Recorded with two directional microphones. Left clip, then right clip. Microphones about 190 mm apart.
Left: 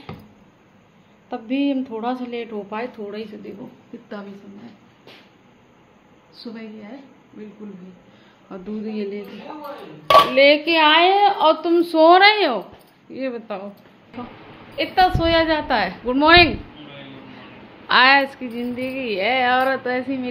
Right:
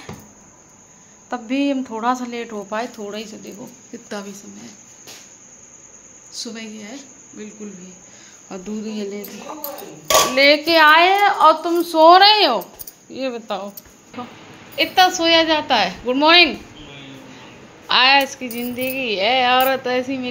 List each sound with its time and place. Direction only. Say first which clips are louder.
1.3 s speech: right 2 dB; centre (ahead or behind)
6.4 s a woman's voice: right 3 dB; 25° right (ahead or behind)
8.5 s cricket: right 3 dB; 10° right (ahead or behind)
8.8 s speech: left 2 dB; centre (ahead or behind)
10.3 s speech: right 1 dB; 5° left (ahead or behind); by 12.1 s 25° left (ahead or behind)
12.1 s speech: right 3 dB; 5° left (ahead or behind)
14.8 s cricket: right 5 dB; 15° right (ahead or behind)
15.1 s speech: right 3 dB; centre (ahead or behind)
17.8 s speech: even; 10° left (ahead or behind)